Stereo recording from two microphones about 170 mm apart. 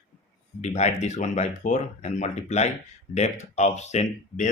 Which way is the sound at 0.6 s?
40° left (ahead or behind).